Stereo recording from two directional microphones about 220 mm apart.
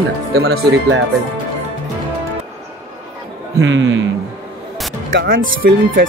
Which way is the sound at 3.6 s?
60° right (ahead or behind).